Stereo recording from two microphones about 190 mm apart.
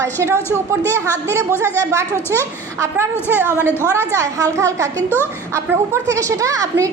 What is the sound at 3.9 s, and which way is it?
A woman's voice, 15° right (ahead or behind).